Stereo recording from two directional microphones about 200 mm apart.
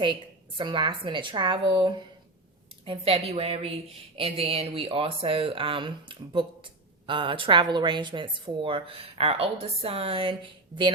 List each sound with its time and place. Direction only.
0.0 s a woman's voice: 25° right (ahead or behind)